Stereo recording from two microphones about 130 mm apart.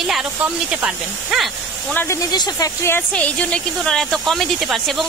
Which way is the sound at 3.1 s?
10° left (ahead or behind).